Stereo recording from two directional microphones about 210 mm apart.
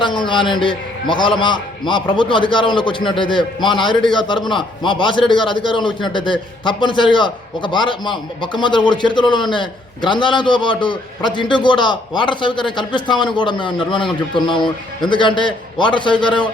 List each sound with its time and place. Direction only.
0.0 s a man's voice: 20° left (ahead or behind)